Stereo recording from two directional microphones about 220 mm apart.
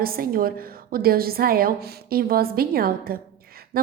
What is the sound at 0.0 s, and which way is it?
A woman's voice, 40° right (ahead or behind).